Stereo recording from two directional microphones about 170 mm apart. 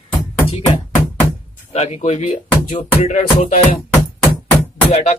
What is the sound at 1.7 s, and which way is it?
Speech, 40° left (ahead or behind).